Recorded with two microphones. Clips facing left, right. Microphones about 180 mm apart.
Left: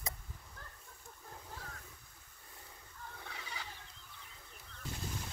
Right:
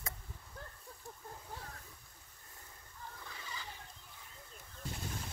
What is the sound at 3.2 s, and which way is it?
Gobble, 65° left (ahead or behind).